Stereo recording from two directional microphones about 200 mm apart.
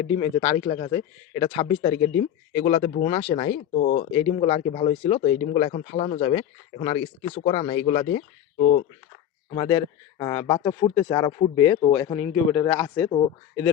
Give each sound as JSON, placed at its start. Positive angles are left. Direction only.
{"t": 0.2, "sound": "speech", "side_deg": 25}
{"t": 9.6, "sound": "speech", "side_deg": 20}